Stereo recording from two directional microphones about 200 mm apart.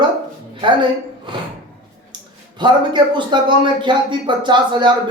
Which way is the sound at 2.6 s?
20° right (ahead or behind).